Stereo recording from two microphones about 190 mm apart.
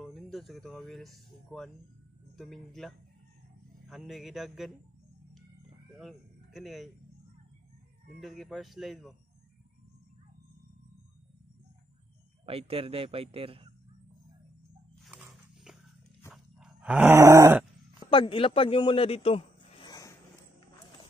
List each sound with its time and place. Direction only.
0.0 s speech: centre (ahead or behind)
5.9 s speech: centre (ahead or behind)
8.2 s speech: centre (ahead or behind)
12.4 s a man's voice: 30° right (ahead or behind)
15.0 s dog: centre (ahead or behind)
16.3 s groan: 5° right (ahead or behind)
18.1 s a man's voice: 30° left (ahead or behind)